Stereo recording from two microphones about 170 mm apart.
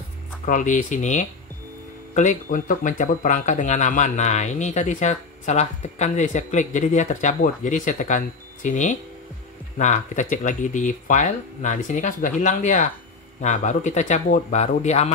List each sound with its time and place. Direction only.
0.5 s speech: 50° left (ahead or behind)